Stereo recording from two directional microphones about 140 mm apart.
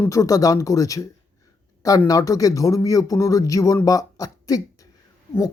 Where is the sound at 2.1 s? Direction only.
25° left (ahead or behind).